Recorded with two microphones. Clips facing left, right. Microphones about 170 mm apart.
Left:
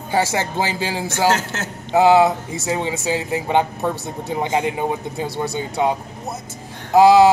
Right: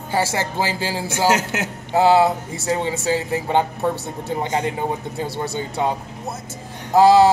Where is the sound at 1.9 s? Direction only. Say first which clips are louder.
Left 2 dB; 20° left (ahead or behind).